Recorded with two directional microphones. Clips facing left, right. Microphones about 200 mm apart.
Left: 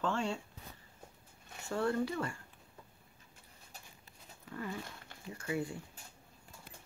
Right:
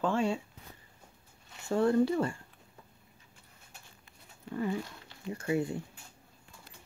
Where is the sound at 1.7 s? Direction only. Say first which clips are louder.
Right 7 dB; 25° right (ahead or behind).